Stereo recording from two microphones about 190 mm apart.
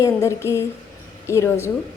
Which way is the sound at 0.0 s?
15° left (ahead or behind).